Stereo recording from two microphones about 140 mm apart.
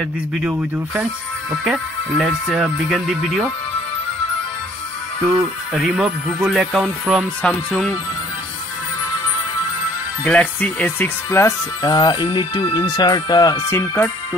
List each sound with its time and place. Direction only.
0.4 s speech: 10° right (ahead or behind)
5.2 s speech: 5° right (ahead or behind)
10.2 s speech: 10° left (ahead or behind)
11.8 s speech: 30° left (ahead or behind)
13.7 s speech: 15° left (ahead or behind)